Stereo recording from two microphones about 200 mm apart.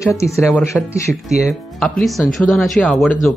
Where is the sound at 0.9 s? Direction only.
Centre (ahead or behind).